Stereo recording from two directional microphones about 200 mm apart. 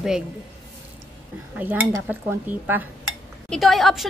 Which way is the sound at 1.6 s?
10° right (ahead or behind).